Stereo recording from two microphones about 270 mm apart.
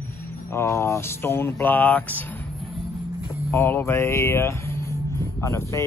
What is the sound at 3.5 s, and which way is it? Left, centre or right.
Speech, centre.